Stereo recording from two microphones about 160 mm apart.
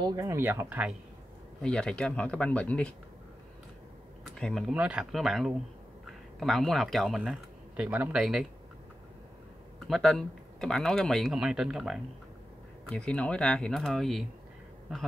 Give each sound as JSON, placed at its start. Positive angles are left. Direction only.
{"t": 0.0, "sound": "speech", "side_deg": -20}
{"t": 1.6, "sound": "speech", "side_deg": 5}
{"t": 4.2, "sound": "speech", "side_deg": 0}
{"t": 9.8, "sound": "speech", "side_deg": 0}